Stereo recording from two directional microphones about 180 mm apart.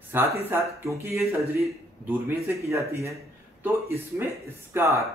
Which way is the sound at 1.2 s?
5° right (ahead or behind).